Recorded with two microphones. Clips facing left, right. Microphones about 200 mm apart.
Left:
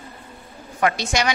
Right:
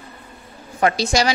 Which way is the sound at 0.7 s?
30° right (ahead or behind).